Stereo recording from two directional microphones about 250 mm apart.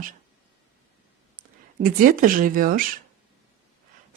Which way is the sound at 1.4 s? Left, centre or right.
Right.